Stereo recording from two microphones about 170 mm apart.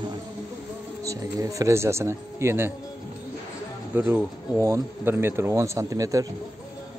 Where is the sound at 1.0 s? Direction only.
20° right (ahead or behind).